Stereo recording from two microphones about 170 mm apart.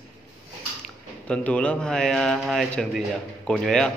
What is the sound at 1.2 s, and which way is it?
A man's voice, 5° left (ahead or behind).